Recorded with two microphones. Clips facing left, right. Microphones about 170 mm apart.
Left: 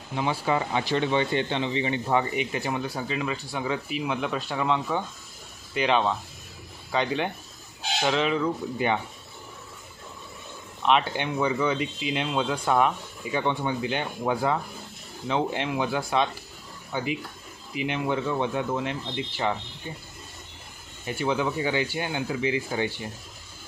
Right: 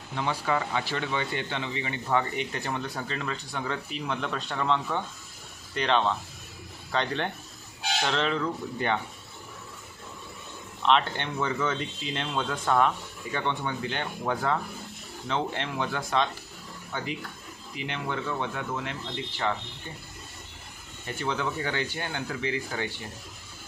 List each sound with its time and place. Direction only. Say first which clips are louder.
0.1 s speech: left 3 dB; 15° left (ahead or behind)
10.8 s speech: left 1 dB; 10° left (ahead or behind)
21.0 s speech: left 4 dB; 15° left (ahead or behind)